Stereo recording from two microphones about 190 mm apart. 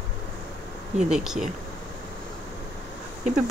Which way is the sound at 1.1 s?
Centre (ahead or behind).